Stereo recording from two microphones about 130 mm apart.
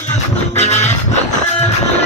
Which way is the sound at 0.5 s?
60° left (ahead or behind).